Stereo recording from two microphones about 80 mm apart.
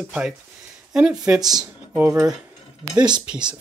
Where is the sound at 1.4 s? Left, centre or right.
Right.